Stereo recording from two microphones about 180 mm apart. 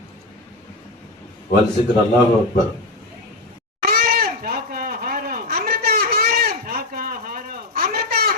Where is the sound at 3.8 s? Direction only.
60° right (ahead or behind).